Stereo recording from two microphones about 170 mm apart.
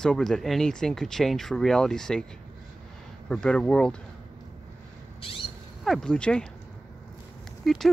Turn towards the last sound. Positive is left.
turn(degrees=0)  # may be behind; listen again after turning